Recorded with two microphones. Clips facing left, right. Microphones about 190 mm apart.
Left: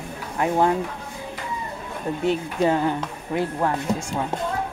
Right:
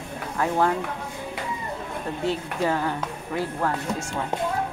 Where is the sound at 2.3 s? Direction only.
20° left (ahead or behind).